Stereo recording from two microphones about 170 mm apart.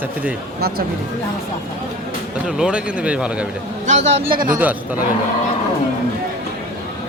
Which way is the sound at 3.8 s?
40° right (ahead or behind).